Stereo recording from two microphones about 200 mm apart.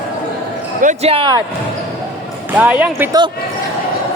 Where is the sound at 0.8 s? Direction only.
35° right (ahead or behind).